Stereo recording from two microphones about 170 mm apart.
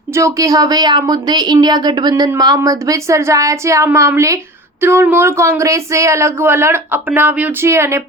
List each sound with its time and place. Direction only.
0.1 s a woman's voice: 15° right (ahead or behind)